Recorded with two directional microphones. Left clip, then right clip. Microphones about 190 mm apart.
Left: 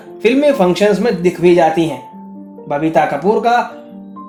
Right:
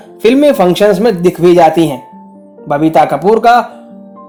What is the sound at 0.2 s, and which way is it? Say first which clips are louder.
Speech: right 4 dB; 45° right (ahead or behind).